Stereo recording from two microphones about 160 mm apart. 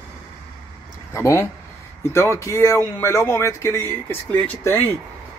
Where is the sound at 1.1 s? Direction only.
15° left (ahead or behind).